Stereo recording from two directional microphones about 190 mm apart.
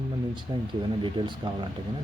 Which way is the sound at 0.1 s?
25° right (ahead or behind).